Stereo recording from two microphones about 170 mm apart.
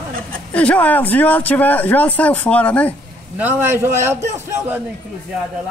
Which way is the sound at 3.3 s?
10° right (ahead or behind).